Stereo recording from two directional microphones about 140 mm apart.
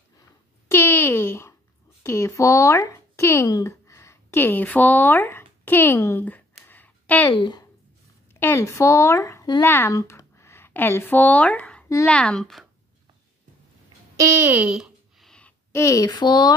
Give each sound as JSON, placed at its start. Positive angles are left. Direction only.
{"t": 0.7, "sound": "a sound", "side_deg": 15}
{"t": 2.0, "sound": "speech", "side_deg": 20}
{"t": 6.7, "sound": "a sound", "side_deg": 10}
{"t": 7.2, "sound": "a woman's voice", "side_deg": 30}
{"t": 8.3, "sound": "speech", "side_deg": 15}
{"t": 14.1, "sound": "music", "side_deg": -20}
{"t": 15.7, "sound": "speech", "side_deg": 20}